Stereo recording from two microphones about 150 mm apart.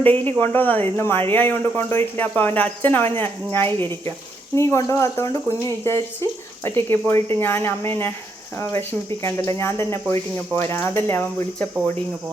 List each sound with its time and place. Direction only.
0.0 s speech: 10° left (ahead or behind)